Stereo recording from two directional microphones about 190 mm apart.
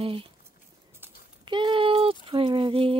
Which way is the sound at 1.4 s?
25° right (ahead or behind).